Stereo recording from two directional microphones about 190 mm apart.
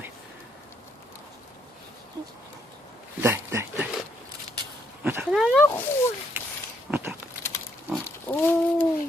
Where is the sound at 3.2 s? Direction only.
10° right (ahead or behind).